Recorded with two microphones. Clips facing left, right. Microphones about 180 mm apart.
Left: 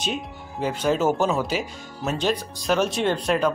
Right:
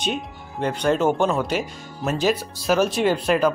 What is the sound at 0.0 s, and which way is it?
Speech, centre (ahead or behind).